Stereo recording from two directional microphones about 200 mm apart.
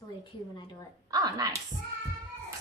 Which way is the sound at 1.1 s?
20° right (ahead or behind).